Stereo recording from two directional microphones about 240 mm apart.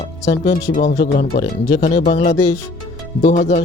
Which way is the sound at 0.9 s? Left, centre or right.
Left.